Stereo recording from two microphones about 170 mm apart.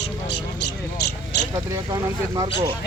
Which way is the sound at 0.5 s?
85° left.